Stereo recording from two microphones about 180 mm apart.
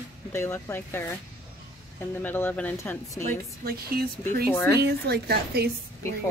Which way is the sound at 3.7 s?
55° right (ahead or behind).